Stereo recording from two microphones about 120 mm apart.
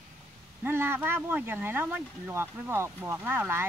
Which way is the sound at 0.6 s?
20° right (ahead or behind).